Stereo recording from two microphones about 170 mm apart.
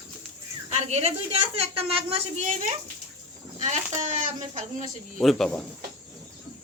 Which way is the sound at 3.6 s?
45° right (ahead or behind).